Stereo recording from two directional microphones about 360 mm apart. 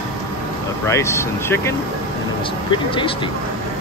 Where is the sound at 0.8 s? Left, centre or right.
Centre.